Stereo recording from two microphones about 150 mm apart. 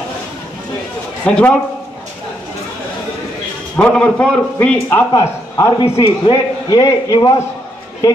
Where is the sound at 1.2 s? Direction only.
10° left (ahead or behind).